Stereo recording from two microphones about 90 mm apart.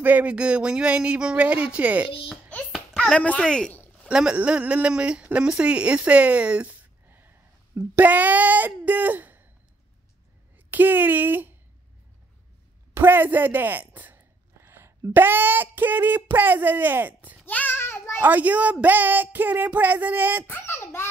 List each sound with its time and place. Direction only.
0.0 s speech: 15° right (ahead or behind)
2.7 s speech: 5° left (ahead or behind)
4.1 s speech: 10° right (ahead or behind)
10.7 s speech: 20° right (ahead or behind)
12.9 s a sound: 25° right (ahead or behind)
15.1 s speech: 25° right (ahead or behind)
17.5 s child singing: 20° left (ahead or behind)
18.2 s speech: 20° right (ahead or behind)
20.4 s a child's voice: 25° left (ahead or behind)